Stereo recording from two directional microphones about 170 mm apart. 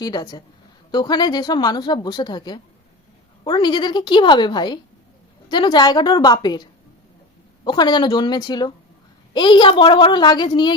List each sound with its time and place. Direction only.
0.0 s speech: 25° left (ahead or behind)